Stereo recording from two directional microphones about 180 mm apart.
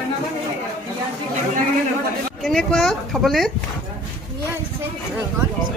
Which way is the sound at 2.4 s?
Centre (ahead or behind).